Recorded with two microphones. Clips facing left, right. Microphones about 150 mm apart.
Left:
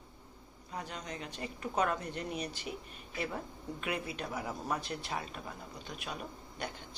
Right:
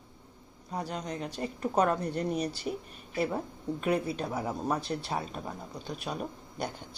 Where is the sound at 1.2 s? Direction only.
45° right (ahead or behind).